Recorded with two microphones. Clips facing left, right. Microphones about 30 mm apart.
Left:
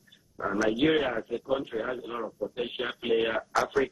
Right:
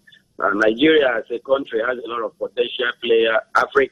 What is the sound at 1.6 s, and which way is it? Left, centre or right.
A man's voice, right.